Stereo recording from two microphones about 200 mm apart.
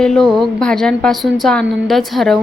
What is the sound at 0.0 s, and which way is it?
A woman's voice, centre (ahead or behind).